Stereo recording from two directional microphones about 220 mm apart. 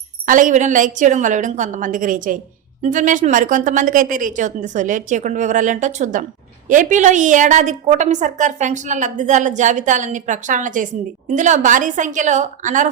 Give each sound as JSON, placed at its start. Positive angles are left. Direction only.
{"t": 0.3, "sound": "a woman's voice", "side_deg": -35}